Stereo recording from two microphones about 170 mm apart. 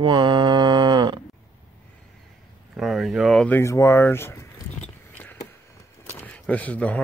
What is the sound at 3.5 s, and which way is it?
Speech, 15° left (ahead or behind).